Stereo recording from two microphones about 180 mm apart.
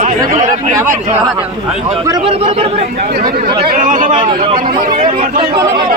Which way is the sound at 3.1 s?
55° right (ahead or behind).